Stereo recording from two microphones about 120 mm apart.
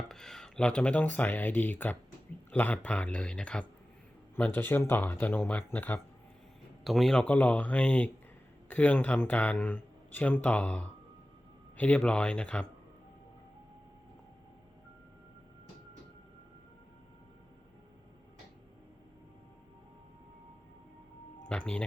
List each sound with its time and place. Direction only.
0.1 s speech: 5° left (ahead or behind)
6.8 s speech: centre (ahead or behind)
21.5 s speech: 10° left (ahead or behind)